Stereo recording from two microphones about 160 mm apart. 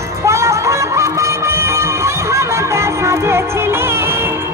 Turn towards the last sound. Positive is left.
turn(degrees=-15)  # may be behind; listen again after turning